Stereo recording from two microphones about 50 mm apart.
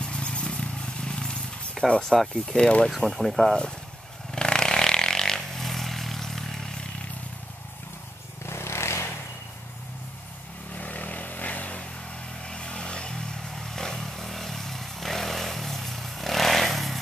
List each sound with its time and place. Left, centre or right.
0.0 s vehicle: centre
1.9 s speech: centre
2.9 s speech: centre
4.3 s vehicle: centre
8.5 s vehicle: left
10.7 s vehicle: left
12.4 s vehicle: centre